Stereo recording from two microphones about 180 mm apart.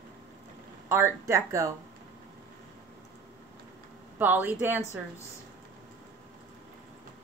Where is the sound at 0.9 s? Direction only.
15° right (ahead or behind).